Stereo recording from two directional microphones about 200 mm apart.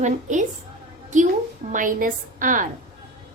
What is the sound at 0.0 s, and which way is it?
Speech, 40° right (ahead or behind).